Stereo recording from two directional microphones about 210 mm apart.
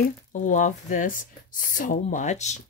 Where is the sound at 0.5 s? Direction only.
35° left (ahead or behind).